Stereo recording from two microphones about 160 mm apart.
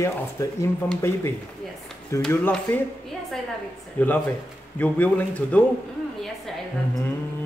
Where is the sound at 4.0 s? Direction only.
10° left (ahead or behind).